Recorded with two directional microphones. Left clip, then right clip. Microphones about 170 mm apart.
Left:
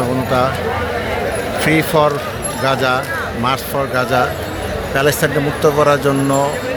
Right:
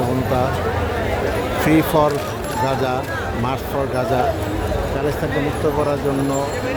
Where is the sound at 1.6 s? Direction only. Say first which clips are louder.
Left 3 dB; 15° right (ahead or behind).